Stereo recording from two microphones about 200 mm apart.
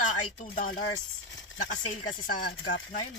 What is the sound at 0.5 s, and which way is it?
Speech, 45° left (ahead or behind).